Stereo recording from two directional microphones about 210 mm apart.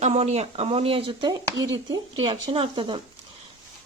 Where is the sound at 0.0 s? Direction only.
30° right (ahead or behind).